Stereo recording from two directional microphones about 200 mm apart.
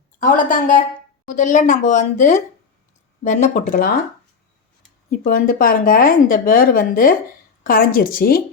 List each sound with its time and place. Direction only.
0.2 s a woman's voice: 40° left (ahead or behind)
5.2 s speech: 45° left (ahead or behind)